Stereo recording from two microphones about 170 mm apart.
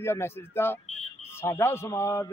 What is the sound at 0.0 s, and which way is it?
A man's voice, 15° left (ahead or behind).